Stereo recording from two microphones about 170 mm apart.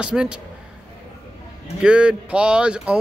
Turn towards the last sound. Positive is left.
turn(degrees=-5)  # may be behind; listen again after turning